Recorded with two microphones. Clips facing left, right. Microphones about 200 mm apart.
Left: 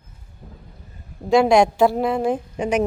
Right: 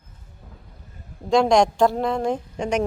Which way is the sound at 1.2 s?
5° left (ahead or behind).